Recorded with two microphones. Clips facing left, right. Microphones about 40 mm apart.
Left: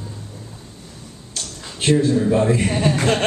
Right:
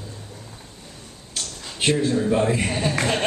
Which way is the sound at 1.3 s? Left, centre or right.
Right.